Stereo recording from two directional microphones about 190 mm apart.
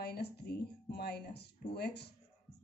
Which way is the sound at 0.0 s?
55° left (ahead or behind).